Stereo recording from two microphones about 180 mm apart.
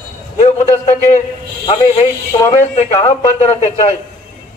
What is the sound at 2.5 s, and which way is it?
A man's voice, 40° left (ahead or behind).